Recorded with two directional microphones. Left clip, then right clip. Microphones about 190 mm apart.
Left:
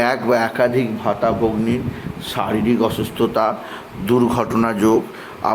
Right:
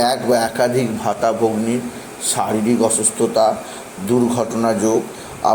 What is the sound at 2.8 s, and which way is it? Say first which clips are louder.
A man's voice: right 2 dB; 20° left (ahead or behind).